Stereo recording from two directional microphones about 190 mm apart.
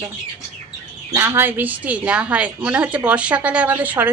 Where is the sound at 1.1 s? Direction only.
15° right (ahead or behind).